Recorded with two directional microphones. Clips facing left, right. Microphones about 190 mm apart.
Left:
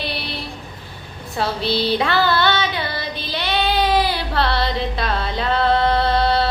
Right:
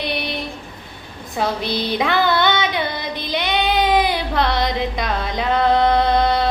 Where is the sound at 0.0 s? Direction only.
20° right (ahead or behind).